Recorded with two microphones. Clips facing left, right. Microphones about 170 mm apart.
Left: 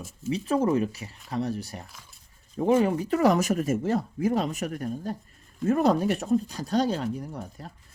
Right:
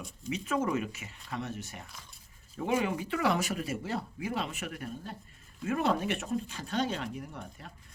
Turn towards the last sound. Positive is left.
turn(degrees=40)  # may be behind; listen again after turning